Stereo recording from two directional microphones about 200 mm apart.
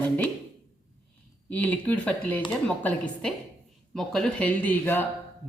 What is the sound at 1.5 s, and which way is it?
A woman's voice, 5° left (ahead or behind).